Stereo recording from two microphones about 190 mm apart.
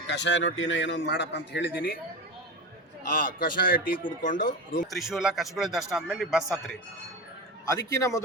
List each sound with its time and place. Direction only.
0.1 s a man's voice: 70° left (ahead or behind)
3.1 s speech: 45° left (ahead or behind)
4.9 s speech: centre (ahead or behind)
7.7 s a man's voice: 20° left (ahead or behind)